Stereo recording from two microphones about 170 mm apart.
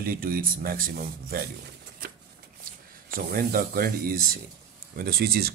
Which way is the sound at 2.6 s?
60° right (ahead or behind).